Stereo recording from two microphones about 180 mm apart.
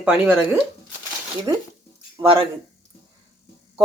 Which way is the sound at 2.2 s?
30° right (ahead or behind).